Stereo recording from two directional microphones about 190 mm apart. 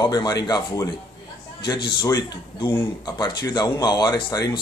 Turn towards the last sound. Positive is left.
turn(degrees=25)  # may be behind; listen again after turning